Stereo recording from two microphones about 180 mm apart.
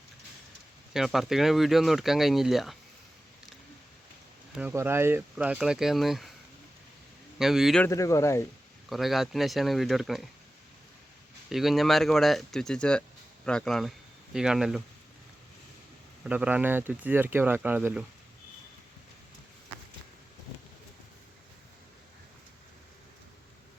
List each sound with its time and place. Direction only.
0.9 s speech: centre (ahead or behind)
4.5 s speech: 10° right (ahead or behind)
7.3 s speech: centre (ahead or behind)
7.9 s speech: 15° left (ahead or behind)
8.9 s speech: centre (ahead or behind)
11.4 s speech: centre (ahead or behind)
16.2 s speech: 5° right (ahead or behind)